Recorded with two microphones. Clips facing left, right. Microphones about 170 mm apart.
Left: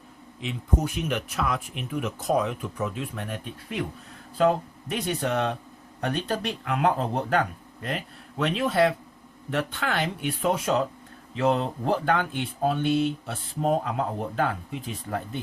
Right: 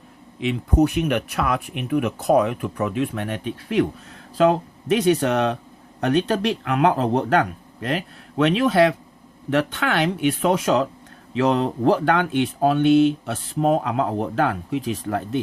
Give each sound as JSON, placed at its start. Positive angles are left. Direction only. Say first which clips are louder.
{"t": 0.3, "sound": "speech", "louder": "right 9 dB", "side_deg": -70}
{"t": 6.0, "sound": "speech", "louder": "right 8 dB", "side_deg": -80}